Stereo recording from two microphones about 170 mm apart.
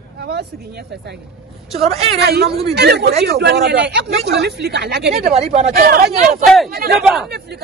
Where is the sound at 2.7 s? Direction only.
85° right.